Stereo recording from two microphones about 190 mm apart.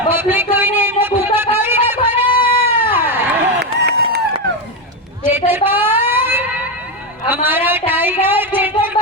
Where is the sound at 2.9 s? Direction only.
10° right (ahead or behind).